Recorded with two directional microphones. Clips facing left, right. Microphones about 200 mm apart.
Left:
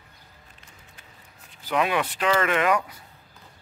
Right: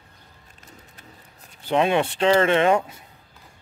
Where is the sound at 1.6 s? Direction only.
25° right (ahead or behind).